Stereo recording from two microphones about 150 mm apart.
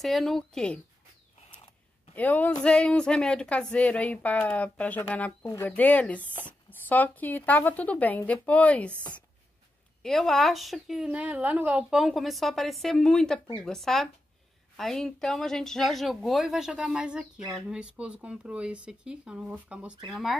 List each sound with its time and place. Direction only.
0.0 s speech: centre (ahead or behind)
2.1 s speech: 10° left (ahead or behind)